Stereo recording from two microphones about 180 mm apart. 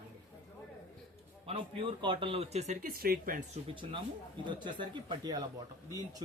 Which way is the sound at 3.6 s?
30° right (ahead or behind).